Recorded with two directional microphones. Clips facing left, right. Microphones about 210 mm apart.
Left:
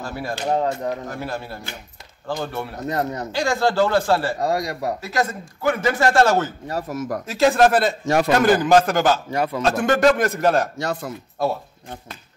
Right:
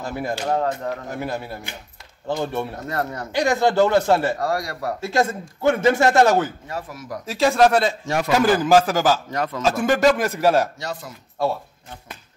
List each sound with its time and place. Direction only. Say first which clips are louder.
0.0 s speech: right 2 dB; 20° right (ahead or behind)
0.5 s speech: left 3 dB; 20° left (ahead or behind)
1.1 s speech: right 1 dB; 15° right (ahead or behind)
2.8 s speech: left 2 dB; 20° left (ahead or behind)
3.3 s speech: right 4 dB; 20° right (ahead or behind)
4.4 s speech: left 2 dB; 20° left (ahead or behind)
5.0 s speech: right 3 dB; 25° right (ahead or behind)
6.7 s speech: left 6 dB; 45° left (ahead or behind)
7.2 s a man's voice: even; centre (ahead or behind)
9.3 s speech: left 3 dB; 10° left (ahead or behind)
9.6 s a man's voice: even; 5° right (ahead or behind)
10.8 s speech: left 5 dB; 55° left (ahead or behind)